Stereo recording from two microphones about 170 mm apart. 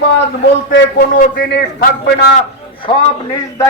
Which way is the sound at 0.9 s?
60° left (ahead or behind).